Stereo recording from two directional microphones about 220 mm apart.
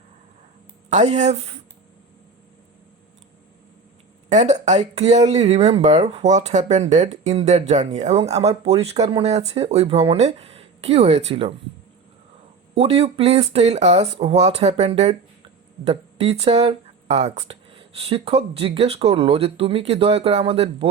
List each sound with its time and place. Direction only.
0.9 s speech: 30° right (ahead or behind)
4.3 s speech: 30° right (ahead or behind)
12.7 s speech: 25° right (ahead or behind)